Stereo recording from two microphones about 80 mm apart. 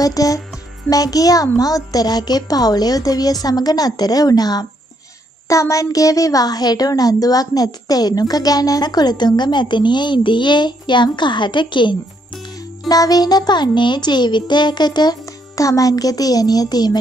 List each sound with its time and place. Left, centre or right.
0.0 s a woman's voice: left
5.5 s a woman's voice: left
12.8 s a woman's voice: left
15.5 s a woman's voice: left